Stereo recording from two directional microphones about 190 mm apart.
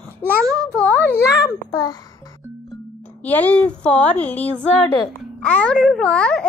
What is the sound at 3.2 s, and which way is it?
Speech, 10° left (ahead or behind).